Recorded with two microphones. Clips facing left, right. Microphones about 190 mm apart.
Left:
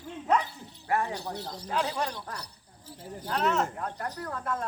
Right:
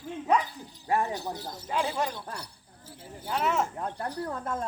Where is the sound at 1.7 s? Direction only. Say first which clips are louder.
Right 1 dB; 10° right (ahead or behind).